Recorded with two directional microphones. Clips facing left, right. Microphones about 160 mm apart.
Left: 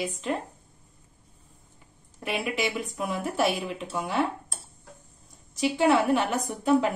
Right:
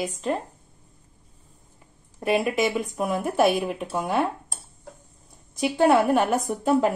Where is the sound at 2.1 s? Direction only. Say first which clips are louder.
Right 7 dB; 45° right (ahead or behind).